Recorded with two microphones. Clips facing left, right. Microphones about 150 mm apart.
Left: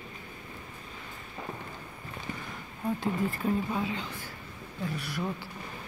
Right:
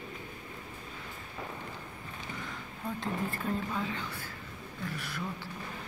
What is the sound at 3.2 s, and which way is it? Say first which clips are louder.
Speech: left 4 dB; 15° left (ahead or behind).